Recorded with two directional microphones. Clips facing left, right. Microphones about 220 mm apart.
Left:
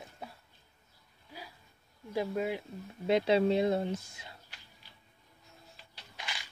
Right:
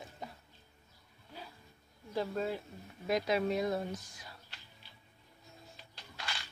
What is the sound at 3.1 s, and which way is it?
Speech, 30° left (ahead or behind).